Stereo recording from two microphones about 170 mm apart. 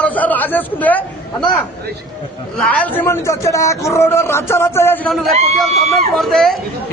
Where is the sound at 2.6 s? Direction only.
10° left (ahead or behind).